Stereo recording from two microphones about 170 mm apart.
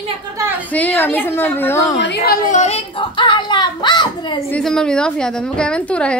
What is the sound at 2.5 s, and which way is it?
A man's voice, 40° left (ahead or behind).